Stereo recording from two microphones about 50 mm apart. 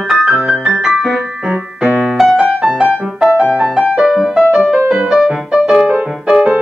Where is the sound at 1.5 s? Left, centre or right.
Right.